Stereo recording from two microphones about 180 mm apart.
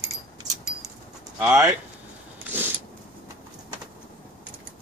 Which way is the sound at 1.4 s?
15° right (ahead or behind).